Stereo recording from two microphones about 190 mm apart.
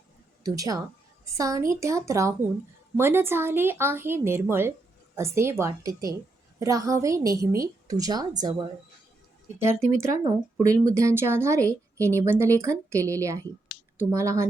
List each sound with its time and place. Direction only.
0.4 s speech: 20° right (ahead or behind)
9.6 s speech: 15° right (ahead or behind)